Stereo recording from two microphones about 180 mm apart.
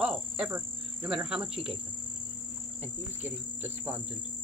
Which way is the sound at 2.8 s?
10° right (ahead or behind).